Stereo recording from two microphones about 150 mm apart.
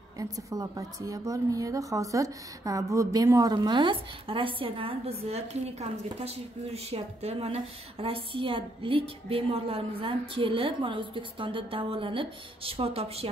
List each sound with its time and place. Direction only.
0.2 s a woman's voice: 20° right (ahead or behind); by 13.3 s 40° right (ahead or behind)